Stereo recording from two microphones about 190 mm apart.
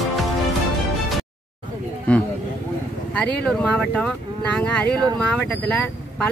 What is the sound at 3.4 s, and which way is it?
Speech, 5° left (ahead or behind).